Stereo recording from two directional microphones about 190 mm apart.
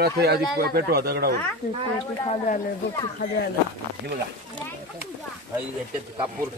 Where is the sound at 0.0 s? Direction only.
55° right (ahead or behind).